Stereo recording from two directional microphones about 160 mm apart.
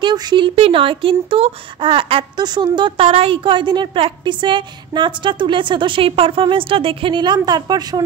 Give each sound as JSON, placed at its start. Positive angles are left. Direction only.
{"t": 0.0, "sound": "speech", "side_deg": -25}